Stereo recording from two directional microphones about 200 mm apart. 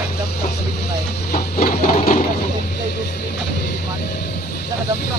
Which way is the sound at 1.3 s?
45° left (ahead or behind).